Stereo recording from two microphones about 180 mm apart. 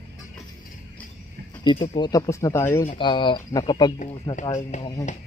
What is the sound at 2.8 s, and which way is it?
Speech, 25° left (ahead or behind).